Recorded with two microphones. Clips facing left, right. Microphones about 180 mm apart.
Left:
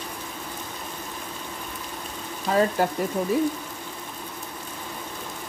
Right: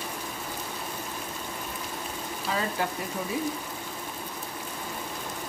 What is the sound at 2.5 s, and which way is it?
Speech, 50° left (ahead or behind).